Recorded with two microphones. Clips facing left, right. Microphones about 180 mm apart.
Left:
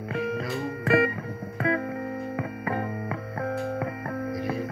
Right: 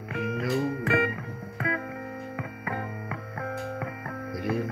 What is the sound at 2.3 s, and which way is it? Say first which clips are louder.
Music: left 5 dB; 35° left (ahead or behind).